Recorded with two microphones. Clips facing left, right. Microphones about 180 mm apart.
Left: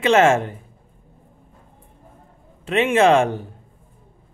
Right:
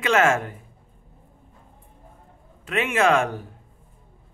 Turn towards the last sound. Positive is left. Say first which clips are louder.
# left 5 dB
turn(degrees=25)  # may be behind; listen again after turning